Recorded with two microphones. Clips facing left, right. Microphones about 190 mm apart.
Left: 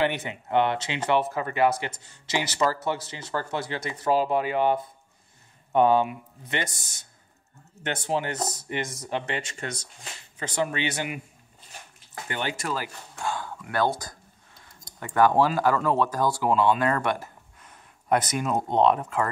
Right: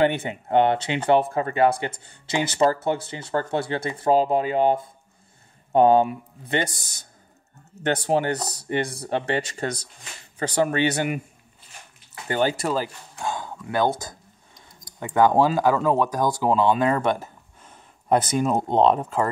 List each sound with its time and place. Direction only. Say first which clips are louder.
0.1 s speech: right 4 dB; 35° right (ahead or behind)
12.3 s speech: right 8 dB; 35° right (ahead or behind)
13.2 s speech: right 2 dB; 20° right (ahead or behind)